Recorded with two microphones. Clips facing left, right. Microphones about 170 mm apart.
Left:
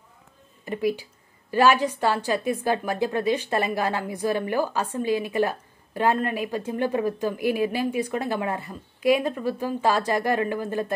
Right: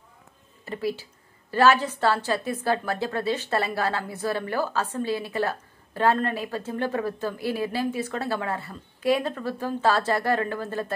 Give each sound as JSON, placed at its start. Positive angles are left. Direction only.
{"t": 0.7, "sound": "a woman's voice", "side_deg": 15}